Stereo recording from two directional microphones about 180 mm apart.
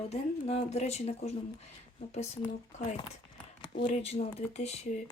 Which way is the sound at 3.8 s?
40° left (ahead or behind).